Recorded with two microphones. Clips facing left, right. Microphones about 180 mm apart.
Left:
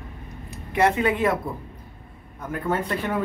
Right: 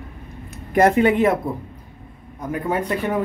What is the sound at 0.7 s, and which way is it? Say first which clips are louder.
Speech: right 5 dB; 45° right (ahead or behind).